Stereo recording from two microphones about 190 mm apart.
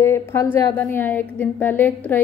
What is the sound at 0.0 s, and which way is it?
A woman's voice, 15° left (ahead or behind).